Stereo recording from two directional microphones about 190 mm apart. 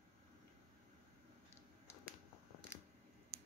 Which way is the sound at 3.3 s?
90° right.